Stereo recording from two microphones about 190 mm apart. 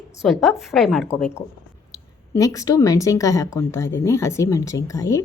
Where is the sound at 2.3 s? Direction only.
15° left (ahead or behind).